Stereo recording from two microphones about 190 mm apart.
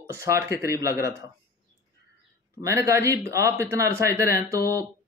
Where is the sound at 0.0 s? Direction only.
15° right (ahead or behind).